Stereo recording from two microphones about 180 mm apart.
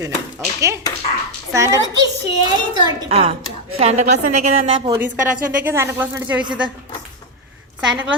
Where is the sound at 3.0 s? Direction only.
35° right (ahead or behind).